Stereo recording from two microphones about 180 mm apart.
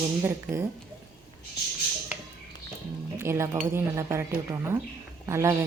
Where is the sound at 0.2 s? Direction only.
15° right (ahead or behind).